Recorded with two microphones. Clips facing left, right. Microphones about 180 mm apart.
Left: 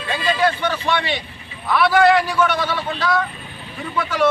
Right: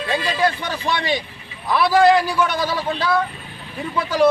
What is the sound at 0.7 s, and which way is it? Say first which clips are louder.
Speech: even; 35° right (ahead or behind).